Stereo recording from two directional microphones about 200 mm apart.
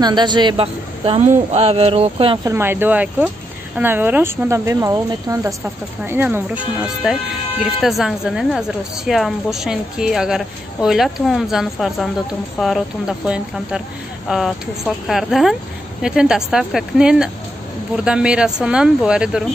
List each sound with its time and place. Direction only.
0.0 s a woman's voice: 20° right (ahead or behind)
2.5 s speech: 10° right (ahead or behind)